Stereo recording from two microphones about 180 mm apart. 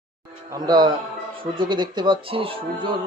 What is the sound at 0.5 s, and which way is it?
Speech, 20° right (ahead or behind).